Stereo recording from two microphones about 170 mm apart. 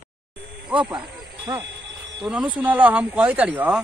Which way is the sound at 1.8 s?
90° right.